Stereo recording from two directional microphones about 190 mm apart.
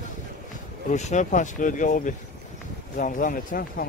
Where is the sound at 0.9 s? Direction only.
40° left (ahead or behind).